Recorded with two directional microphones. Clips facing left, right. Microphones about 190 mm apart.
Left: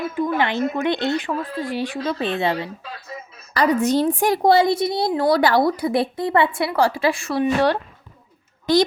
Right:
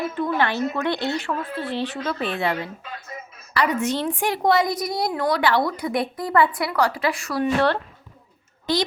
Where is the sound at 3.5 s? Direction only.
40° left (ahead or behind).